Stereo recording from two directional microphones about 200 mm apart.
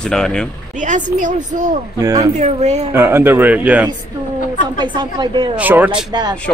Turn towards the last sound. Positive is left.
turn(degrees=-10)  # may be behind; listen again after turning